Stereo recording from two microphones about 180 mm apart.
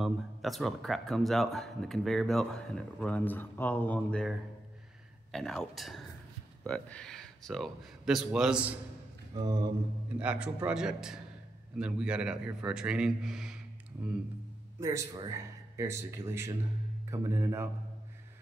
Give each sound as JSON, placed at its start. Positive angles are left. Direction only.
{"t": 0.0, "sound": "speech", "side_deg": 0}
{"t": 9.3, "sound": "a sound", "side_deg": -20}
{"t": 10.1, "sound": "speech", "side_deg": -5}
{"t": 14.8, "sound": "speech", "side_deg": -15}